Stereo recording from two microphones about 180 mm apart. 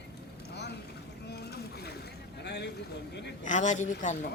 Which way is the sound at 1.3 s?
65° left (ahead or behind).